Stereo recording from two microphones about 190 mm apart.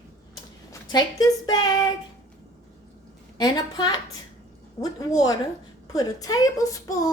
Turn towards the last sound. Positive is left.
turn(degrees=20)  # may be behind; listen again after turning